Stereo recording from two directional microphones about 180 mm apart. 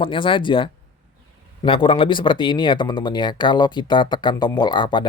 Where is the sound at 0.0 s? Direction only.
30° left (ahead or behind).